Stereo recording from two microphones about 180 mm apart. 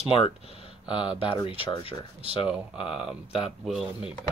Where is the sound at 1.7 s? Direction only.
30° left (ahead or behind).